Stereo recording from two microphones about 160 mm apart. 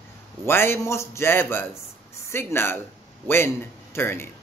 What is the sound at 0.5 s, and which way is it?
Speech, 15° left (ahead or behind).